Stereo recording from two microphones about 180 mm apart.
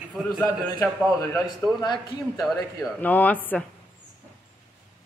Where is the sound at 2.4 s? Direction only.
Centre (ahead or behind).